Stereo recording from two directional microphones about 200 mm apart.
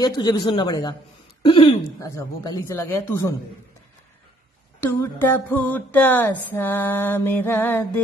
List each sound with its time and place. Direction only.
0.0 s speech: 20° left (ahead or behind)
4.7 s speech: 10° left (ahead or behind)